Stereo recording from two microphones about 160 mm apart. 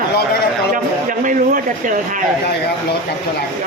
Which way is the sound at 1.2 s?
55° right (ahead or behind).